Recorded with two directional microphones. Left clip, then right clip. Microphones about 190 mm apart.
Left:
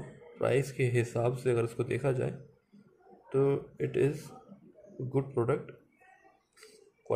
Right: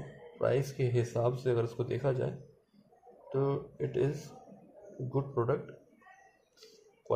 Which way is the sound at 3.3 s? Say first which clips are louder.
Left 4 dB; 20° left (ahead or behind).